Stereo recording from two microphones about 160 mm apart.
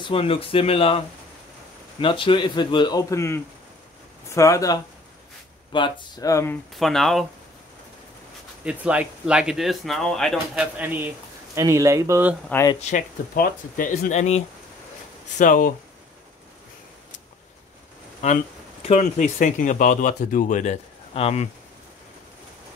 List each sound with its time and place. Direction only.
0.0 s a man's voice: 35° left (ahead or behind); by 6.6 s 15° left (ahead or behind)
6.7 s speech: centre (ahead or behind)
8.6 s speech: 5° right (ahead or behind)
12.9 s speech: 60° left (ahead or behind); by 14.4 s 45° left (ahead or behind)
15.3 s speech: 55° left (ahead or behind)
18.2 s speech: 45° left (ahead or behind)